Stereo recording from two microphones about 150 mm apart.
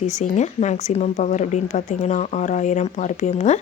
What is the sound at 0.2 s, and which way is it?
Speech, 50° left (ahead or behind).